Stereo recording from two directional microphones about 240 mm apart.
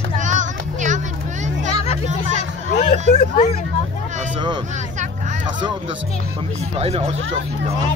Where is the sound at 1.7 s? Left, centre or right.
Left.